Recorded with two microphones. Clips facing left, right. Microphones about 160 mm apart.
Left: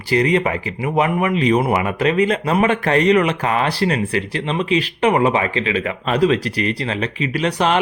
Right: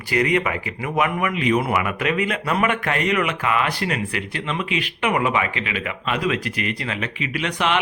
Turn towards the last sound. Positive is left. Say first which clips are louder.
# left 5 dB
turn(degrees=35)  # may be behind; listen again after turning